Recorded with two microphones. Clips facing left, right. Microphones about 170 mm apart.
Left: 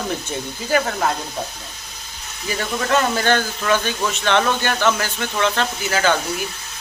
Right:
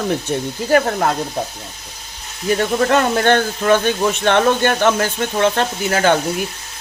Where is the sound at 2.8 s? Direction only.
50° right (ahead or behind).